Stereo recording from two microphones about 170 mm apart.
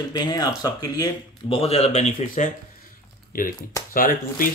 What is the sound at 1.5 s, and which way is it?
Speech, 35° left (ahead or behind).